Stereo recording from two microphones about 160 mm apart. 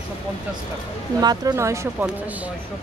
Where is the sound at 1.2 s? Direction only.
25° right (ahead or behind).